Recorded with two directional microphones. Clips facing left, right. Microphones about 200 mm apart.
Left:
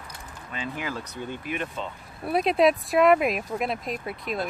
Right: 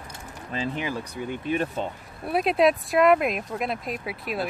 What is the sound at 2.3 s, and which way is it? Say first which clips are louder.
Speech: even; centre (ahead or behind).